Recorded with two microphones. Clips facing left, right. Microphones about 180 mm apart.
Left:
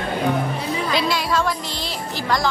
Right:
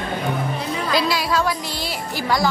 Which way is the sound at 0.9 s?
5° right (ahead or behind).